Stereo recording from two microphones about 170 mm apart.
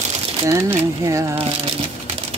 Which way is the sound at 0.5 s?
15° right (ahead or behind).